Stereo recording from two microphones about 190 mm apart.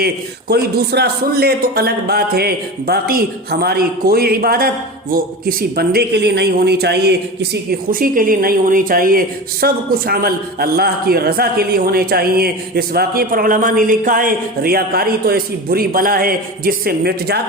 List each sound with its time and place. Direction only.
0.0 s speech: 55° right (ahead or behind)